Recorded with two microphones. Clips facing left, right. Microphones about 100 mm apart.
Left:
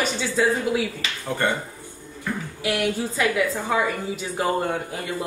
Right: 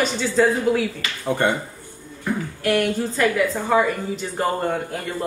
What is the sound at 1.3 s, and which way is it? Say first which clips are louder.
Speech: right 4 dB; 15° right (ahead or behind).